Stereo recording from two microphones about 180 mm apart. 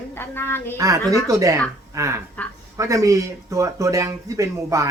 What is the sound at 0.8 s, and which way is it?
Speech, 20° right (ahead or behind).